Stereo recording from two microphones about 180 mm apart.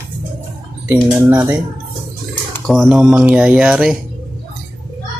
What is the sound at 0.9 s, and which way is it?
Speech, 10° right (ahead or behind).